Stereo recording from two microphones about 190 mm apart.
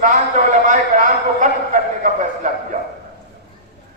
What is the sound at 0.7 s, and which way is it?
A man's voice, 40° right (ahead or behind).